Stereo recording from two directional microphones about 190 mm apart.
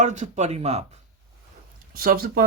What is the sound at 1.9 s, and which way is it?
Speech, 50° right (ahead or behind).